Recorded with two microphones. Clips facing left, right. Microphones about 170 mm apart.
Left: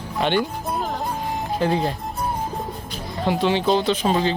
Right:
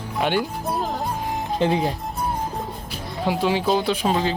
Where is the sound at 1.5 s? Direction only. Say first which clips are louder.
Right 1 dB; 20° right (ahead or behind).